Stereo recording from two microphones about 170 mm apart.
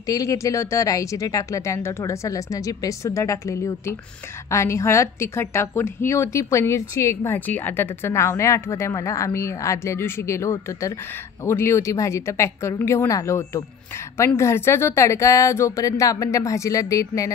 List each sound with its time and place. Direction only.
0.0 s a woman's voice: 20° left (ahead or behind)